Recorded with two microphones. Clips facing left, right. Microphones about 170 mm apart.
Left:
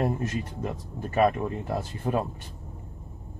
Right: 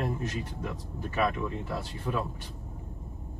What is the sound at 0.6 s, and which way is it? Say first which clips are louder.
Speech: left 3 dB; 50° left (ahead or behind).